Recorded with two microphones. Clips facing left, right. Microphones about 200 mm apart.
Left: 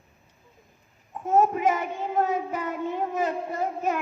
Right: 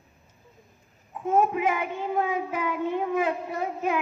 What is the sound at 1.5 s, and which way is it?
Child singing, 45° left (ahead or behind).